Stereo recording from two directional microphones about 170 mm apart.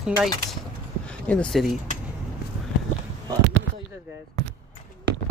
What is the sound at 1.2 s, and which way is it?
Speech, 5° left (ahead or behind).